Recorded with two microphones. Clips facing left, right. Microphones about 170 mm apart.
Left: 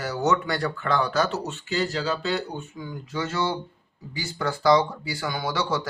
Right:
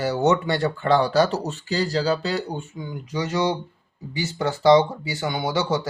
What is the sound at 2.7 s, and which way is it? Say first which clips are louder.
Speech: right 1 dB; 20° right (ahead or behind).